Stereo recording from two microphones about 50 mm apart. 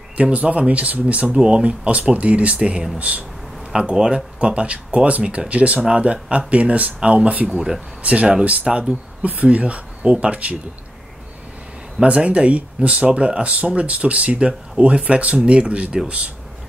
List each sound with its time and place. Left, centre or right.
0.2 s speech: right
3.7 s speech: centre
7.5 s speech: centre
8.0 s speech: right
12.0 s speech: right